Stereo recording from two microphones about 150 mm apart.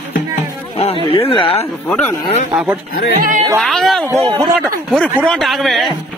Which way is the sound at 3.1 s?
65° right (ahead or behind).